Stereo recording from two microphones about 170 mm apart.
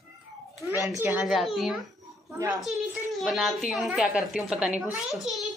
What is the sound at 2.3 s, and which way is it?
Speech, 20° right (ahead or behind).